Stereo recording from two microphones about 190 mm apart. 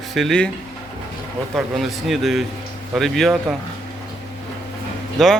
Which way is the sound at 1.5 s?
Centre (ahead or behind).